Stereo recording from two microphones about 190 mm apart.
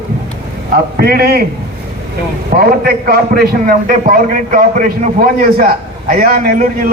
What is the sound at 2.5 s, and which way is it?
A man's voice, 45° right (ahead or behind).